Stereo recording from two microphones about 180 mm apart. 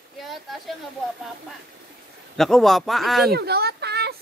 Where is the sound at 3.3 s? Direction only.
60° right (ahead or behind).